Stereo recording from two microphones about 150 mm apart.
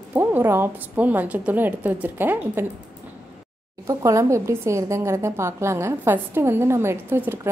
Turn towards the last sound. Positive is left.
turn(degrees=-15)  # may be behind; listen again after turning